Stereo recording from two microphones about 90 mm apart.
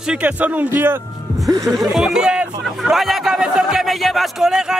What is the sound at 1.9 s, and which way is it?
Music, 5° right (ahead or behind).